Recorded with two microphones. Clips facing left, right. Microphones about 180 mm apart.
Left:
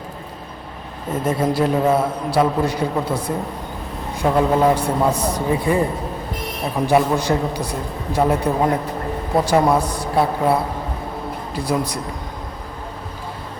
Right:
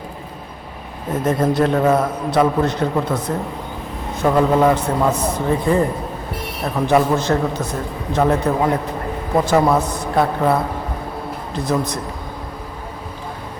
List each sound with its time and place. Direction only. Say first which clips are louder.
1.2 s a man's voice: right 2 dB; 10° left (ahead or behind)